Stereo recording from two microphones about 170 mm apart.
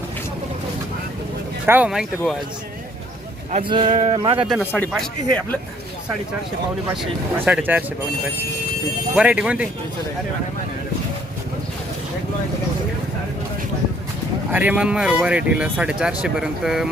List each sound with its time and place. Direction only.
1.6 s speech: 10° right (ahead or behind)
3.6 s speech: 25° right (ahead or behind)
4.4 s speech: 5° right (ahead or behind)
6.9 s speech: 5° right (ahead or behind)
9.1 s speech: 5° right (ahead or behind)
14.5 s speech: 10° right (ahead or behind)